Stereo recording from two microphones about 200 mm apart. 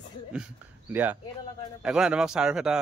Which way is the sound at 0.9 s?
10° right (ahead or behind).